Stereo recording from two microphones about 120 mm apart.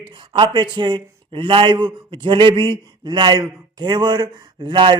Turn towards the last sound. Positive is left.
turn(degrees=-45)  # may be behind; listen again after turning